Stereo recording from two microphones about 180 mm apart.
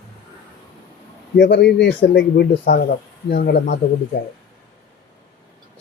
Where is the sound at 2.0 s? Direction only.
60° left (ahead or behind).